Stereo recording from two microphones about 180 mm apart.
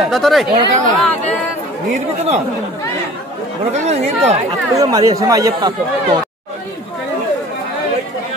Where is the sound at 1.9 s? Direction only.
40° right (ahead or behind).